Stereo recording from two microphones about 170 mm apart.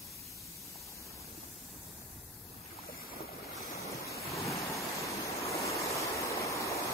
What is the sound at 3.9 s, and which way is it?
Waves, 20° left (ahead or behind).